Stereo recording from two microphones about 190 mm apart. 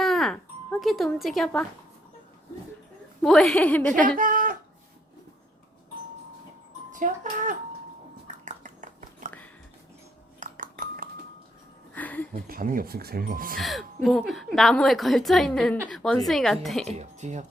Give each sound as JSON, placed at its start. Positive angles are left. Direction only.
{"t": 0.0, "sound": "music", "side_deg": 0}
{"t": 3.2, "sound": "a woman's voice", "side_deg": 0}
{"t": 4.2, "sound": "speech", "side_deg": -45}
{"t": 6.9, "sound": "speech", "side_deg": -45}
{"t": 8.3, "sound": "a sound", "side_deg": -40}
{"t": 10.4, "sound": "dishes", "side_deg": -45}
{"t": 11.9, "sound": "a sound", "side_deg": 10}
{"t": 12.5, "sound": "speech", "side_deg": -50}
{"t": 13.6, "sound": "a woman's voice", "side_deg": 0}
{"t": 17.0, "sound": "speech", "side_deg": -40}